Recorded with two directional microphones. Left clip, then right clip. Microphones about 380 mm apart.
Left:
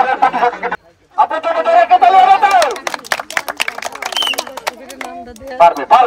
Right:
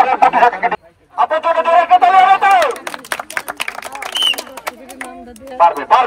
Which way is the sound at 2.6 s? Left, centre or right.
Centre.